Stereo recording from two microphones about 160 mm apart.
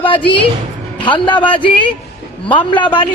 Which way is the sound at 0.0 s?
30° left (ahead or behind).